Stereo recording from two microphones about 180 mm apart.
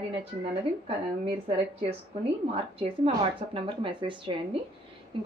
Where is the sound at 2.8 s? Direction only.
30° right (ahead or behind).